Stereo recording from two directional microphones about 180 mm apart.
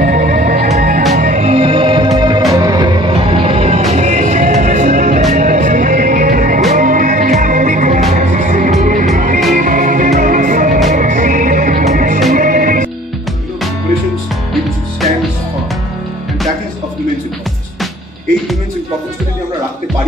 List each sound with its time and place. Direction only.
0.0 s music: 45° right (ahead or behind)